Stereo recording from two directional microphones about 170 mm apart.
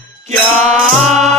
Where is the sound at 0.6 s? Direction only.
40° right (ahead or behind).